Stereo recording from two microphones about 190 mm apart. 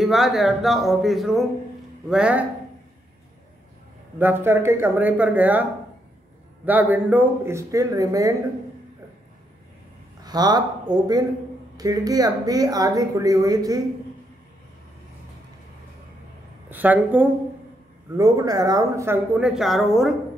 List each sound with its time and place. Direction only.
0.0 s speech: centre (ahead or behind)
4.2 s speech: 10° right (ahead or behind)
10.2 s speech: 20° right (ahead or behind)
16.7 s a woman's voice: 10° right (ahead or behind)